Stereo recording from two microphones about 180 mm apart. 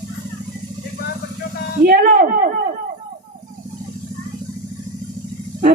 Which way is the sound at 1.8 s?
55° right (ahead or behind).